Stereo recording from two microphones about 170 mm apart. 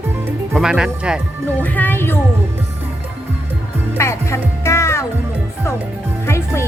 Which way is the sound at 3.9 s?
15° left (ahead or behind).